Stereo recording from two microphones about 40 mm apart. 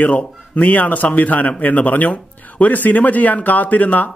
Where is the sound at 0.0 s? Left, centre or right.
Left.